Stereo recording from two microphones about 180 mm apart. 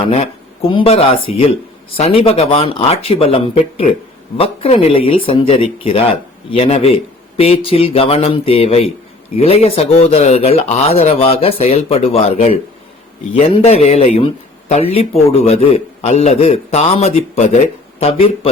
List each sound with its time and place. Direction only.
0.1 s speech: 35° left (ahead or behind)